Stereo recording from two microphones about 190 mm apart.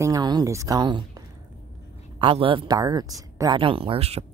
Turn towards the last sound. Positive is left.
turn(degrees=-30)  # may be behind; listen again after turning